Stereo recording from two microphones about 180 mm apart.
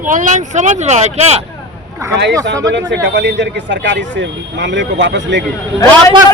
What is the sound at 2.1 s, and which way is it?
Speech, 75° right (ahead or behind).